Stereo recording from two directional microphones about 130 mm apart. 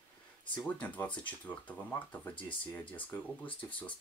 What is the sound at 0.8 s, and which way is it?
Speech, 10° left (ahead or behind).